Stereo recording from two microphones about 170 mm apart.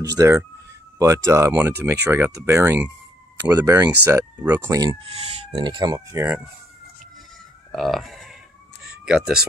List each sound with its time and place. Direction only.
0.1 s speech: 20° right (ahead or behind)
7.7 s a sound: centre (ahead or behind)
9.0 s speech: 5° right (ahead or behind)